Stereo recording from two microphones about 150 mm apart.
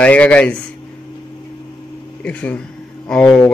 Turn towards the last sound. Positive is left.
turn(degrees=5)  # may be behind; listen again after turning